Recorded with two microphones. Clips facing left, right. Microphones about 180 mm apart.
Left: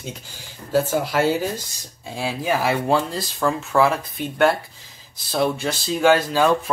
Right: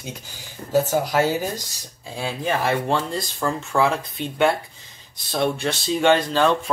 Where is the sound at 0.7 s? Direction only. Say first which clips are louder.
Even; 15° right (ahead or behind).